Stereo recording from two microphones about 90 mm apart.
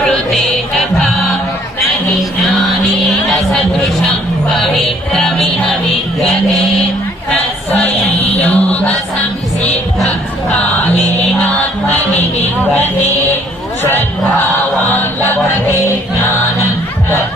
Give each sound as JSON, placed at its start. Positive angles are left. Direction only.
{"t": 0.8, "sound": "music", "side_deg": 0}
{"t": 3.2, "sound": "a sound", "side_deg": 0}
{"t": 6.1, "sound": "music", "side_deg": 0}
{"t": 8.4, "sound": "music", "side_deg": 15}